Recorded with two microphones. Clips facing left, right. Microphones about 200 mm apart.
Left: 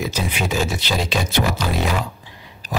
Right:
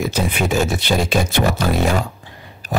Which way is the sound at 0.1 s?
50° right (ahead or behind).